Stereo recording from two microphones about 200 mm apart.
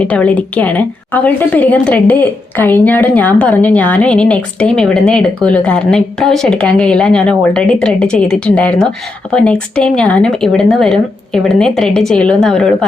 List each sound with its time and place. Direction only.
0.0 s a woman's voice: 5° left (ahead or behind)